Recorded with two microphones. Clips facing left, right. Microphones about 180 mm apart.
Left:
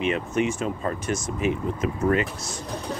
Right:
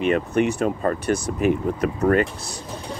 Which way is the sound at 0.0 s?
50° right (ahead or behind).